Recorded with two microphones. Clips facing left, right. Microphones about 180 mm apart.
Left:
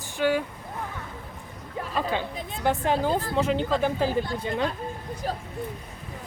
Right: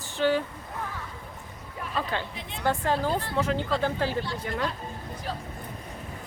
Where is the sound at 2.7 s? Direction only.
15° left (ahead or behind).